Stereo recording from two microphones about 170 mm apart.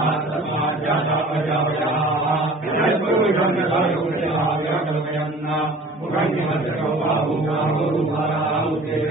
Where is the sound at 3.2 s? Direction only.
Centre (ahead or behind).